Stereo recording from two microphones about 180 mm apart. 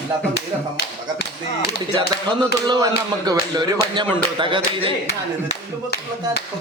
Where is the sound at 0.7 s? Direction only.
65° left (ahead or behind).